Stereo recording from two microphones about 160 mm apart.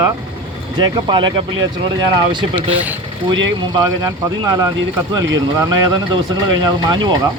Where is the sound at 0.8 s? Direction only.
30° right (ahead or behind).